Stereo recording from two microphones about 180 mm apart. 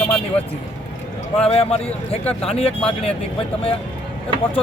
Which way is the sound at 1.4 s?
30° left (ahead or behind).